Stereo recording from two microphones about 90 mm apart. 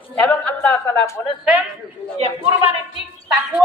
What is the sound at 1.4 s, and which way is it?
Speech, 10° right (ahead or behind).